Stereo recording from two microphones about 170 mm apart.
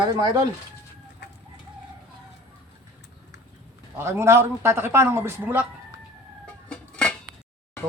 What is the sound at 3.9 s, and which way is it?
A man's voice, 15° right (ahead or behind).